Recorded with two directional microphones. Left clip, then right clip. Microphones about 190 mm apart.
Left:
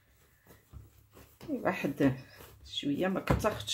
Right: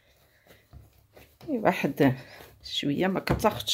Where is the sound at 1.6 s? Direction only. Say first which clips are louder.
Right 7 dB; 60° right (ahead or behind).